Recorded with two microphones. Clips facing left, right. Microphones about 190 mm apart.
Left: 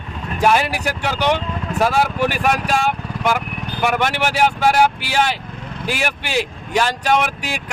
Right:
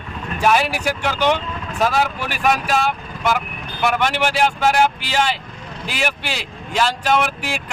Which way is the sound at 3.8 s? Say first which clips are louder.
Even; 10° left (ahead or behind).